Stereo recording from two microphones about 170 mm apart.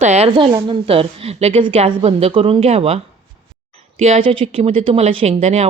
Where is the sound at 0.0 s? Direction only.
40° right (ahead or behind).